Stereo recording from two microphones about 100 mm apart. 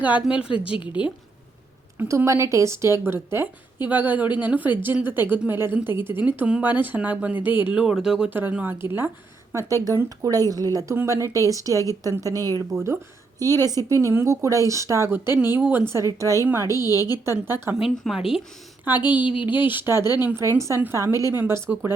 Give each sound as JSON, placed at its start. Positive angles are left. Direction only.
{"t": 0.0, "sound": "a woman's voice", "side_deg": -15}
{"t": 0.5, "sound": "a woman's voice", "side_deg": 60}
{"t": 2.0, "sound": "a woman's voice", "side_deg": -30}
{"t": 8.3, "sound": "a woman's voice", "side_deg": -20}
{"t": 16.9, "sound": "a woman's voice", "side_deg": 35}
{"t": 17.4, "sound": "a woman's voice", "side_deg": -25}
{"t": 17.8, "sound": "a woman's voice", "side_deg": -5}
{"t": 18.9, "sound": "a woman's voice", "side_deg": -20}